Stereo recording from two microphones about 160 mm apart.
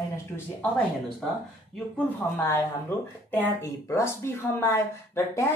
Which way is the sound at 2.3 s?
15° left (ahead or behind).